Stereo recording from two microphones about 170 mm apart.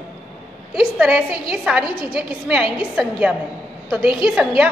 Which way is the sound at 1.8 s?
30° left (ahead or behind).